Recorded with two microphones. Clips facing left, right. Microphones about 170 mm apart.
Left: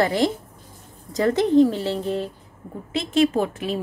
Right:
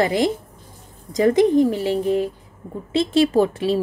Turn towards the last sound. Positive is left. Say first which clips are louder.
# right 6 dB
turn(degrees=-30)  # may be behind; listen again after turning